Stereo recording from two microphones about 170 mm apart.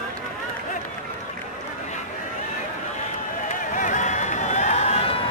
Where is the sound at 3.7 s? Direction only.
45° left (ahead or behind).